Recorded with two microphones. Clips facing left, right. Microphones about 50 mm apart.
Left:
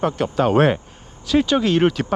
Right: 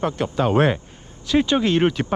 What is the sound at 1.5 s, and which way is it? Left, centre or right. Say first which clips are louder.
Speech: left 1 dB; right.